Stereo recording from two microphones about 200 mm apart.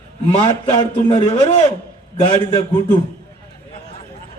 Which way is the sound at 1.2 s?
35° left (ahead or behind).